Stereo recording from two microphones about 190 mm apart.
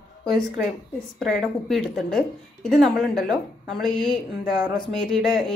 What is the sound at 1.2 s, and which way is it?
A woman's voice, centre (ahead or behind).